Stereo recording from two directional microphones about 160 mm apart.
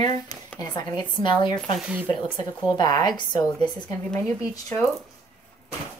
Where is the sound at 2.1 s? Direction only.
30° left (ahead or behind).